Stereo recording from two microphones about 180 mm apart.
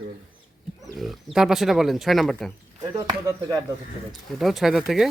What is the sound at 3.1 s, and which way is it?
Speech, 20° right (ahead or behind).